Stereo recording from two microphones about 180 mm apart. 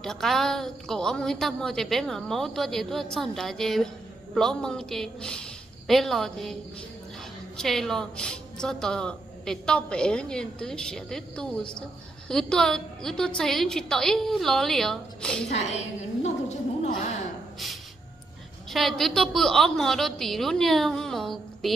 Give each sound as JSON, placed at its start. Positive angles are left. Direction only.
{"t": 0.0, "sound": "a woman's voice", "side_deg": 0}
{"t": 7.5, "sound": "a woman's voice", "side_deg": 0}
{"t": 15.5, "sound": "a sound", "side_deg": 40}
{"t": 18.7, "sound": "a woman's voice", "side_deg": 0}